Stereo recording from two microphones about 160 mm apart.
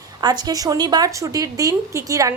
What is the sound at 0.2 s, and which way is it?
A woman's voice, 25° right (ahead or behind).